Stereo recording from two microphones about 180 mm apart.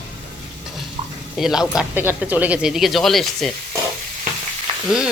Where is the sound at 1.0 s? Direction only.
40° right (ahead or behind).